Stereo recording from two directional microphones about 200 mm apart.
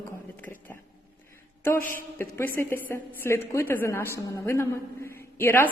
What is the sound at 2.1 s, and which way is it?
A woman's voice, 10° left (ahead or behind).